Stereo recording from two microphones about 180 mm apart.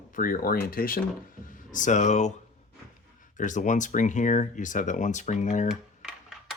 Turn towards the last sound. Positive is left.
turn(degrees=40)  # may be behind; listen again after turning